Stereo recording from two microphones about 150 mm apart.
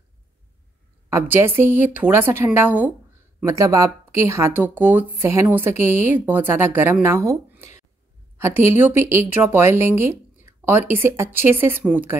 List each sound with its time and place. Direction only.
1.1 s speech: 15° right (ahead or behind)